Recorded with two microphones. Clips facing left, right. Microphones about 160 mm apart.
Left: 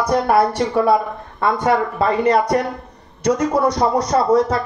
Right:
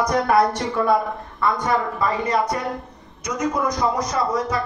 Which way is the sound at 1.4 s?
65° left (ahead or behind).